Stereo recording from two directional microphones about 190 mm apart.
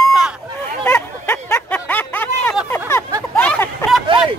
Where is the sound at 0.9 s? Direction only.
10° left (ahead or behind).